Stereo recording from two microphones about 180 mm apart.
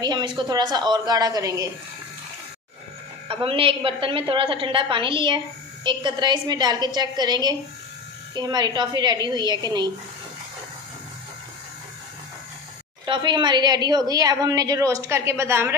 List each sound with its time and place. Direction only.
0.0 s a woman's voice: 25° right (ahead or behind)
3.3 s a woman's voice: 30° right (ahead or behind)
13.0 s a woman's voice: 25° right (ahead or behind)